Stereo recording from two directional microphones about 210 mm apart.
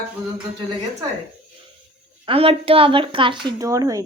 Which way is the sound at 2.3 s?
25° right (ahead or behind).